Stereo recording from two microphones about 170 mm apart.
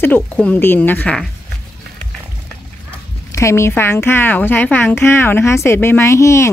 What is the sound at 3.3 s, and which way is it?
A woman's voice, 15° left (ahead or behind).